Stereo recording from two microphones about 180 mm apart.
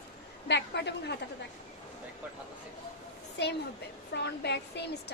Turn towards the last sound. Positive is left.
turn(degrees=70)  # may be behind; listen again after turning